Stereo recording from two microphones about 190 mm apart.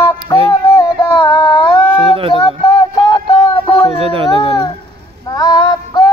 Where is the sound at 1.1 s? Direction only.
20° left (ahead or behind).